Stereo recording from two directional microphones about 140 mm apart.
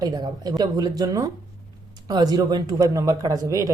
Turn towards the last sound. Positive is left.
turn(degrees=-25)  # may be behind; listen again after turning